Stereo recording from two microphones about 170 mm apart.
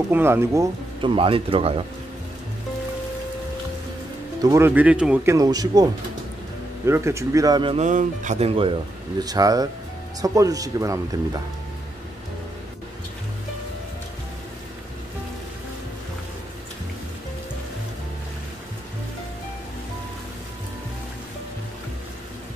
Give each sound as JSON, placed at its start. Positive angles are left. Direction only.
{"t": 0.1, "sound": "speech", "side_deg": -15}
{"t": 1.0, "sound": "speech", "side_deg": -30}
{"t": 4.4, "sound": "speech", "side_deg": -20}
{"t": 6.9, "sound": "speech", "side_deg": -15}
{"t": 7.7, "sound": "speech", "side_deg": -45}
{"t": 9.2, "sound": "speech", "side_deg": -20}